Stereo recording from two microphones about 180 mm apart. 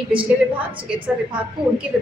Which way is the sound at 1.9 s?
5° right (ahead or behind).